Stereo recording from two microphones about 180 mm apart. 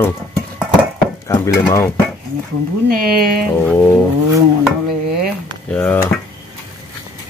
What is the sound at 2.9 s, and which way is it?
Speech, 55° right (ahead or behind).